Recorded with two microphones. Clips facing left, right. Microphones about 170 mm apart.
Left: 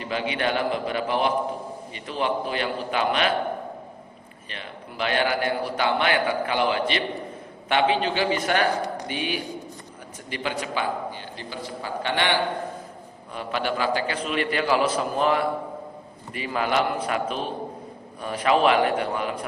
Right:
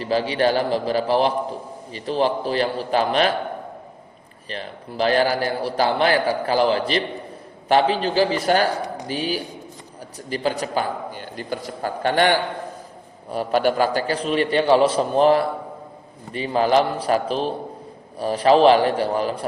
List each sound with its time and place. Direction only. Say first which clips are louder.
0.0 s a man's voice: right 6 dB; 35° right (ahead or behind)
4.4 s a man's voice: right 6 dB; 35° right (ahead or behind)